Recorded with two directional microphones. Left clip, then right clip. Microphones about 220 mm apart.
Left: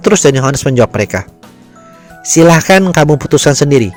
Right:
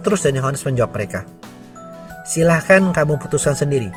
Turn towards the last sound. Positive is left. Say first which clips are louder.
# left 10 dB
turn(degrees=40)  # may be behind; listen again after turning